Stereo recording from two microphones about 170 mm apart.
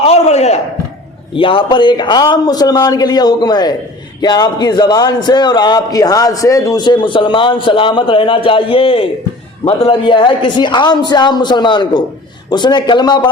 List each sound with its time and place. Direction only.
0.0 s a man's voice: 40° left (ahead or behind)